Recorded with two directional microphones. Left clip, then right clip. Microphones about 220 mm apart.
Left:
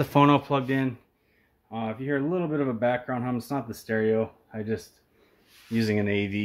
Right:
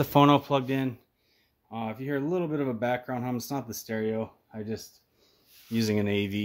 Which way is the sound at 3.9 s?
10° right (ahead or behind).